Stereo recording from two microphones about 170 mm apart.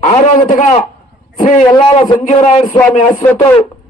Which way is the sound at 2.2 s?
40° left (ahead or behind).